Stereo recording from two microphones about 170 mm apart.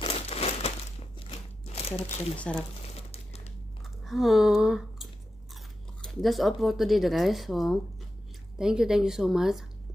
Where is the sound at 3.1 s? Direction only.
35° left (ahead or behind).